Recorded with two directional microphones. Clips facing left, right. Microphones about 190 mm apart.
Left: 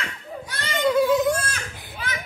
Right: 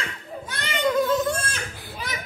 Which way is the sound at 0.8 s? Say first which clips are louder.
Left 3 dB; 10° left (ahead or behind).